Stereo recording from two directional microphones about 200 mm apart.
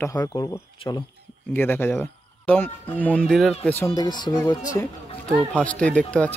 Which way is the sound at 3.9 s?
20° left (ahead or behind).